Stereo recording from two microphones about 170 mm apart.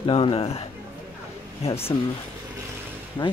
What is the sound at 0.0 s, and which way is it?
Speech, 30° left (ahead or behind).